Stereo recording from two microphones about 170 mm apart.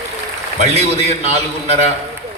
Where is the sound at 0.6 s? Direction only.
40° right (ahead or behind).